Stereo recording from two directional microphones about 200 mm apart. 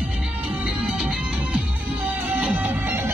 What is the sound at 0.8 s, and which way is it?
Music, 5° right (ahead or behind).